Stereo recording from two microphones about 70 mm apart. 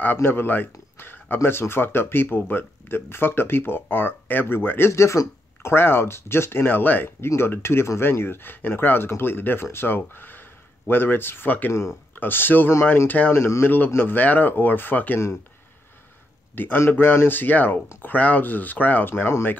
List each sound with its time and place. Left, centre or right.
0.0 s speech: left
5.7 s speech: left
11.7 s speech: left
12.2 s speech: left
16.5 s speech: left